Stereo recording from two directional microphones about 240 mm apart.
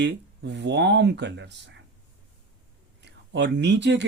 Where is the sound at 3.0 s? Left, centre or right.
Right.